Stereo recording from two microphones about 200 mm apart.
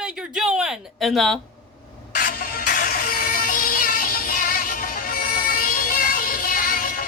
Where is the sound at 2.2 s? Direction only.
50° left (ahead or behind).